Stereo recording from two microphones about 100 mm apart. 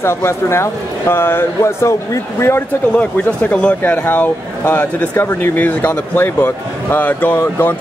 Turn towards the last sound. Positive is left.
turn(degrees=20)  # may be behind; listen again after turning